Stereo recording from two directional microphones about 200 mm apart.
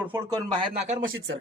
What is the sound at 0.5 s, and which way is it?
Speech, 35° right (ahead or behind).